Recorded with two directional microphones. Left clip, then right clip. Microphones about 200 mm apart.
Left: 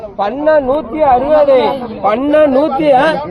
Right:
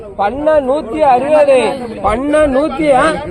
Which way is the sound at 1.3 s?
Centre (ahead or behind).